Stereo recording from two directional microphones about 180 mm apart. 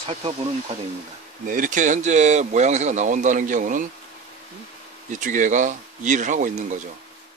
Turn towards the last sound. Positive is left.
turn(degrees=-45)  # may be behind; listen again after turning